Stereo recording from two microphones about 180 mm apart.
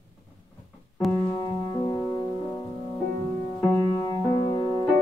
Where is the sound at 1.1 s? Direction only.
25° left (ahead or behind).